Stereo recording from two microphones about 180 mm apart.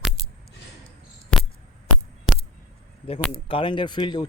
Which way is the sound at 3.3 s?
30° left (ahead or behind).